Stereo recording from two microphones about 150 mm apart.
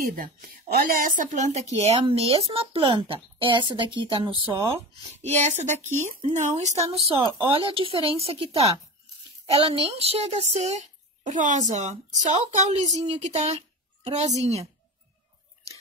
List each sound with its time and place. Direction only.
0.0 s a woman's voice: 65° right (ahead or behind); by 2.0 s 45° right (ahead or behind)
2.0 s speech: 35° right (ahead or behind)
5.2 s a child's voice: 50° right (ahead or behind)